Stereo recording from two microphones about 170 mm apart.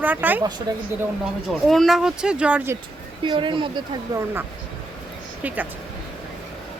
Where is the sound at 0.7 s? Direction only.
25° right (ahead or behind).